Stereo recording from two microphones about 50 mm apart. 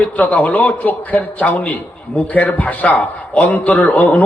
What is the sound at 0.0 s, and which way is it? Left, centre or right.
A man's voice, left.